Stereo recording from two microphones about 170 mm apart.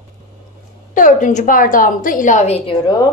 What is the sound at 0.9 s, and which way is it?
A woman's voice, 45° left (ahead or behind).